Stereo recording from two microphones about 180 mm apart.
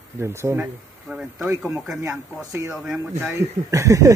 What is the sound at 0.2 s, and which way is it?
Speech, 15° right (ahead or behind).